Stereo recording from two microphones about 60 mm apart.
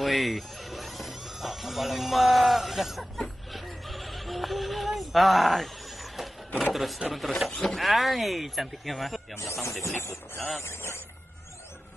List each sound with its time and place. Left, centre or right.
0.0 s speech: centre
3.5 s music: centre
6.7 s speech: centre
9.4 s speech: left